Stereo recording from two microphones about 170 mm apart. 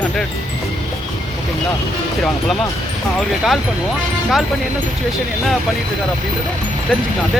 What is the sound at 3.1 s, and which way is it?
Speech, centre (ahead or behind).